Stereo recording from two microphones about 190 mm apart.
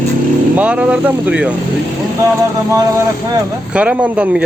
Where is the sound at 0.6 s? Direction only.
5° right (ahead or behind).